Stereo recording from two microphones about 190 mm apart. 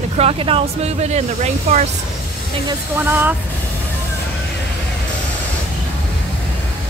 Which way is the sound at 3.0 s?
10° right (ahead or behind).